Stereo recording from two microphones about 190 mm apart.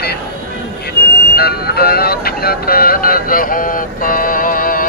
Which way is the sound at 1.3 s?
55° left (ahead or behind).